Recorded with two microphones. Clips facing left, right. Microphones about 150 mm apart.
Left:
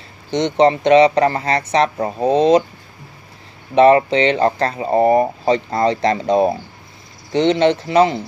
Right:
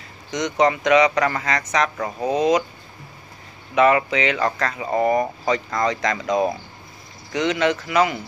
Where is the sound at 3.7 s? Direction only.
30° left (ahead or behind).